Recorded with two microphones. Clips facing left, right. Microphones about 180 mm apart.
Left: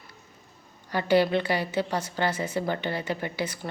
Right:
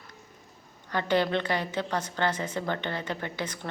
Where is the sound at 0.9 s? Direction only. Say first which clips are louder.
Left 4 dB; 10° left (ahead or behind).